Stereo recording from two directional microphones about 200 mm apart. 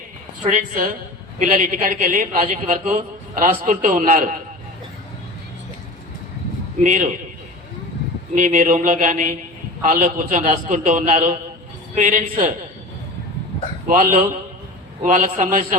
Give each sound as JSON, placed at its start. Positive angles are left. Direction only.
{"t": 0.4, "sound": "a man's voice", "side_deg": -40}
{"t": 6.8, "sound": "a man's voice", "side_deg": -40}
{"t": 8.4, "sound": "a man's voice", "side_deg": -40}
{"t": 13.8, "sound": "a man's voice", "side_deg": -40}